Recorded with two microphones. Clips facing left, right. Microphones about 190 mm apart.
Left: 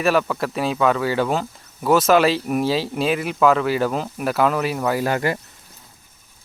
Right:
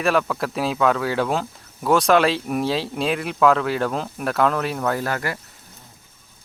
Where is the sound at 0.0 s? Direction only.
Centre (ahead or behind).